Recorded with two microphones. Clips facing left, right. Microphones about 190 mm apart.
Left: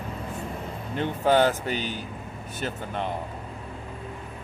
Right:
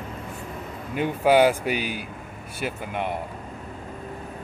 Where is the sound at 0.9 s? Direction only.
10° right (ahead or behind).